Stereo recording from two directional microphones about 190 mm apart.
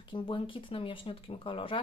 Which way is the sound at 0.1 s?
25° left (ahead or behind).